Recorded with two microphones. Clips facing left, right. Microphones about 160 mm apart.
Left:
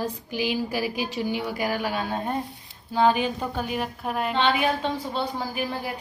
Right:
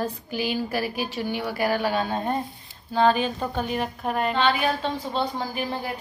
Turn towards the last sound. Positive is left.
turn(degrees=10)  # may be behind; listen again after turning